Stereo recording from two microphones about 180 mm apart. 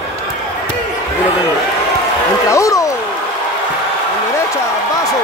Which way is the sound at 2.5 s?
15° left (ahead or behind).